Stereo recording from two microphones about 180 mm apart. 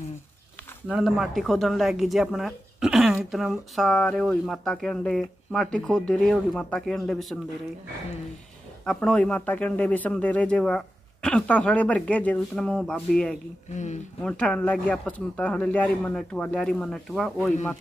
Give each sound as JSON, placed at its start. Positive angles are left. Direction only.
{"t": 0.8, "sound": "speech", "side_deg": -5}
{"t": 8.8, "sound": "a man's voice", "side_deg": 5}